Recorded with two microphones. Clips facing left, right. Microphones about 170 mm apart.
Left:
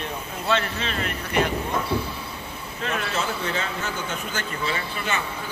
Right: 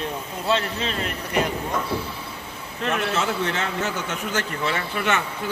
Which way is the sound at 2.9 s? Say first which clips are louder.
Right 4 dB; 70° right (ahead or behind).